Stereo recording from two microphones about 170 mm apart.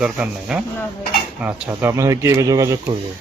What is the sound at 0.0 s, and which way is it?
Speech, 5° right (ahead or behind).